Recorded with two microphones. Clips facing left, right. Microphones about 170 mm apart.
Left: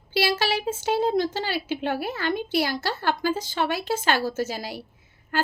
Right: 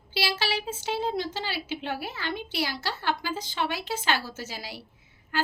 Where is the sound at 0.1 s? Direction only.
45° left (ahead or behind).